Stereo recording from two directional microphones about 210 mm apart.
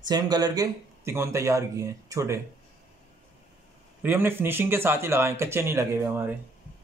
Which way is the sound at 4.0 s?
10° right (ahead or behind).